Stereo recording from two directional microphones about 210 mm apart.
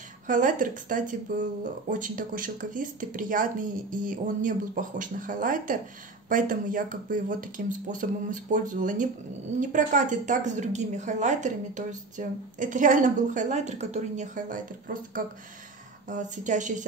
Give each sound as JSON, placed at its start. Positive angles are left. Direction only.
{"t": 0.3, "sound": "speech", "side_deg": -40}
{"t": 16.1, "sound": "speech", "side_deg": -35}